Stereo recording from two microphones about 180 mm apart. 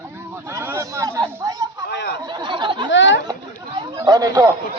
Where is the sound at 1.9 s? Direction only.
70° left (ahead or behind).